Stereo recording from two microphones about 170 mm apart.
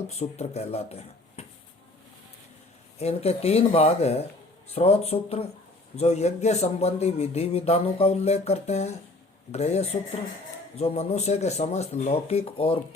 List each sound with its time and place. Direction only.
0.1 s speech: 40° left (ahead or behind)
3.0 s speech: 35° left (ahead or behind)